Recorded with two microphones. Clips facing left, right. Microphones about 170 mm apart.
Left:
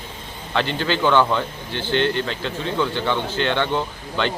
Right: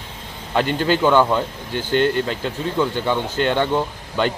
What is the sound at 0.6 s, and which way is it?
Speech, 45° right (ahead or behind).